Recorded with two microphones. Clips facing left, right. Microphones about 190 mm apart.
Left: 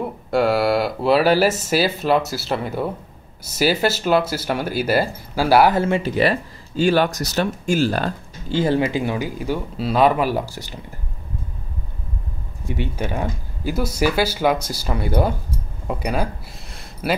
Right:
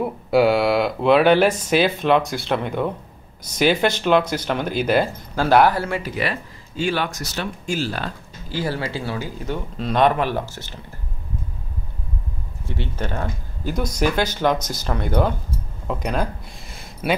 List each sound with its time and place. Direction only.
0.0 s speech: centre (ahead or behind)
5.7 s speech: 20° left (ahead or behind)
6.8 s speech: 40° left (ahead or behind)
8.5 s speech: 25° left (ahead or behind)
12.6 s speech: 15° left (ahead or behind)